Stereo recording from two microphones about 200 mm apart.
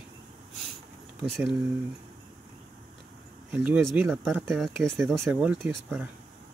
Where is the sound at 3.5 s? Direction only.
Centre (ahead or behind).